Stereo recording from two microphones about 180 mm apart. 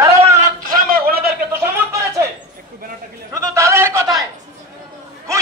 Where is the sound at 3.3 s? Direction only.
15° right (ahead or behind).